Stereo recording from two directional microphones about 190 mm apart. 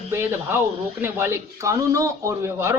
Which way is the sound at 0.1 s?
15° right (ahead or behind).